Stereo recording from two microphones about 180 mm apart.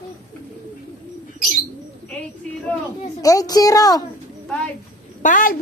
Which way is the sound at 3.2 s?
20° left (ahead or behind).